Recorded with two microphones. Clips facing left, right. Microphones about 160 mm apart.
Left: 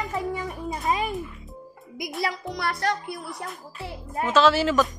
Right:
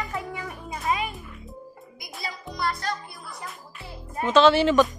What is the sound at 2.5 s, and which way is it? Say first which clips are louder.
Speech: right 2 dB; 70° left (ahead or behind).